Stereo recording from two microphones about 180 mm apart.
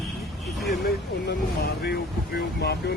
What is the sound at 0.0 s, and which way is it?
Vehicle, centre (ahead or behind).